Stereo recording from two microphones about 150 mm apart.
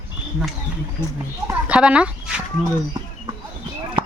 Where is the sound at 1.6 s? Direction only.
10° right (ahead or behind).